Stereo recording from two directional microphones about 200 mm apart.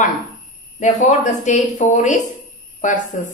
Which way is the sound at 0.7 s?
35° left (ahead or behind).